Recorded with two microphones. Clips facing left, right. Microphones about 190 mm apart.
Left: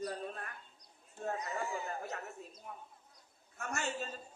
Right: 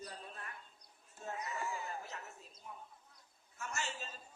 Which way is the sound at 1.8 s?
55° left (ahead or behind).